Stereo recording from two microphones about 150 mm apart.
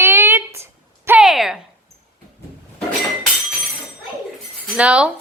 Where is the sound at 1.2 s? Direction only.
Centre (ahead or behind).